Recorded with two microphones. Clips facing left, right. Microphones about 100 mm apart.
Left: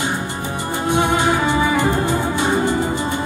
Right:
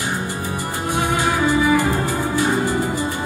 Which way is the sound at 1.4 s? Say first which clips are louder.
Even; 20° left (ahead or behind).